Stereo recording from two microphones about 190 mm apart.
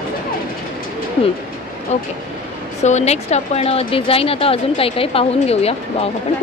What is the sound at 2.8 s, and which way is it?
A woman's voice, 35° left (ahead or behind).